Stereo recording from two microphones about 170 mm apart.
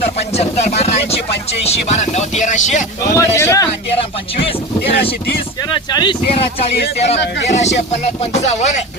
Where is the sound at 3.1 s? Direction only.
15° left (ahead or behind).